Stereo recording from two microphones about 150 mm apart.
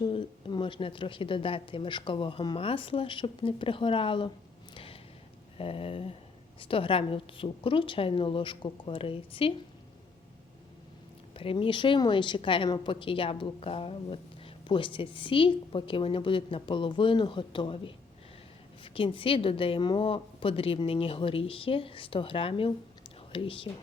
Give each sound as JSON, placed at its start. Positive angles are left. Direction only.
{"t": 0.0, "sound": "speech", "side_deg": 35}
{"t": 4.7, "sound": "a sound", "side_deg": 40}
{"t": 5.5, "sound": "speech", "side_deg": 40}
{"t": 11.3, "sound": "speech", "side_deg": 35}